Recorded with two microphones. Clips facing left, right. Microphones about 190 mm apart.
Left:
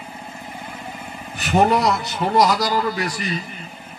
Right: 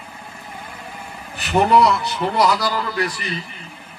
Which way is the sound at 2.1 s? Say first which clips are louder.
Left 1 dB; 50° left (ahead or behind).